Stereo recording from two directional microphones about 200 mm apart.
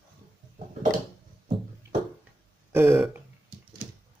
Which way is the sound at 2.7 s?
10° right (ahead or behind).